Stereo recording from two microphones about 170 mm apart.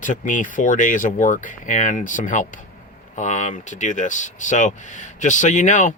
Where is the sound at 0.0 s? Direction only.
50° left (ahead or behind).